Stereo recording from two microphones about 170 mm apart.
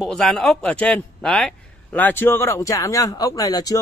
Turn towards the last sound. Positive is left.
turn(degrees=20)  # may be behind; listen again after turning